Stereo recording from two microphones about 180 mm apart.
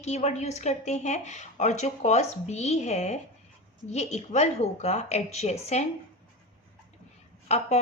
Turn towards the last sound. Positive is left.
turn(degrees=40)  # may be behind; listen again after turning